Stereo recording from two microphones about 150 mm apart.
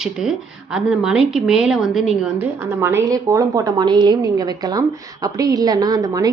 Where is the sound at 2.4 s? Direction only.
15° right (ahead or behind).